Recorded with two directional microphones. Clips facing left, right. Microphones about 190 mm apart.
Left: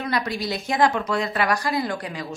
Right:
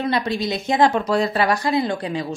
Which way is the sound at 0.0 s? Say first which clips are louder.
Right 4 dB; 25° right (ahead or behind).